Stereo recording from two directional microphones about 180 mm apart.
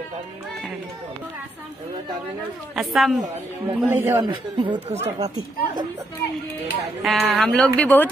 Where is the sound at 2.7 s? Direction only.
Centre (ahead or behind).